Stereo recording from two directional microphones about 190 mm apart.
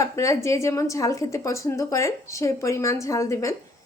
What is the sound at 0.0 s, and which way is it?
A woman's voice, 15° left (ahead or behind).